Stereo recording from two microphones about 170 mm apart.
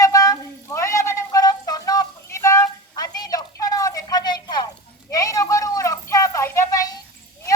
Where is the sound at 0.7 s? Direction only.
15° left (ahead or behind).